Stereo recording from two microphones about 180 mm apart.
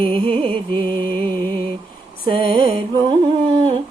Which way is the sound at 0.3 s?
30° right (ahead or behind).